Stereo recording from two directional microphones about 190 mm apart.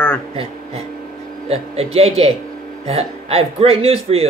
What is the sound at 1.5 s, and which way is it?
Speech, 30° right (ahead or behind).